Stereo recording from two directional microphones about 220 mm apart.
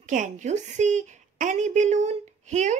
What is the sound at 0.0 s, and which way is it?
A woman's voice, 35° right (ahead or behind).